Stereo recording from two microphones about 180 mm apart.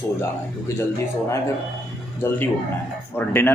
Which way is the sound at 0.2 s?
10° left (ahead or behind).